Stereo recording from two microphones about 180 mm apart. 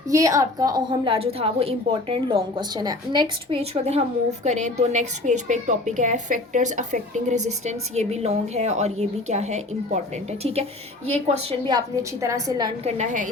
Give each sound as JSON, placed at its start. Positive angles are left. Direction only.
{"t": 0.1, "sound": "a woman's voice", "side_deg": -20}
{"t": 12.8, "sound": "a woman's voice", "side_deg": -40}